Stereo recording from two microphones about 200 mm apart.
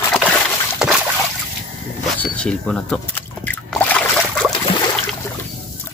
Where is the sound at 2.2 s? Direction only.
5° left (ahead or behind).